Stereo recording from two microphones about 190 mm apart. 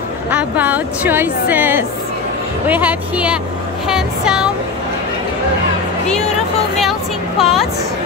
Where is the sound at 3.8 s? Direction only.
5° right (ahead or behind).